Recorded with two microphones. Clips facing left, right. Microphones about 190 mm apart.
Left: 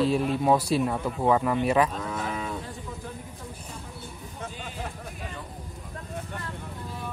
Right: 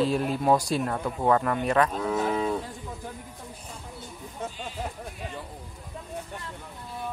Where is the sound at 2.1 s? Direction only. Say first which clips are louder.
Right 8 dB; 35° right (ahead or behind).